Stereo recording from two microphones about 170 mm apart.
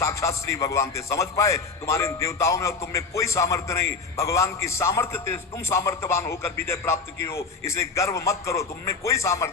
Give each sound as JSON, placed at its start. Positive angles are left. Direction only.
{"t": 0.0, "sound": "a man's voice", "side_deg": 15}